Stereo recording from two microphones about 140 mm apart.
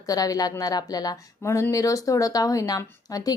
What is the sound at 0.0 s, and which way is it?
Speech, 25° left (ahead or behind).